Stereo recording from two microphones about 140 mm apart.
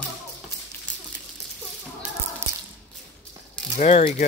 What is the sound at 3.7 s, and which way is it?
Speech, 55° left (ahead or behind).